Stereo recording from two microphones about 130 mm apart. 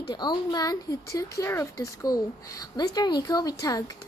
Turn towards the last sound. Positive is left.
turn(degrees=30)  # may be behind; listen again after turning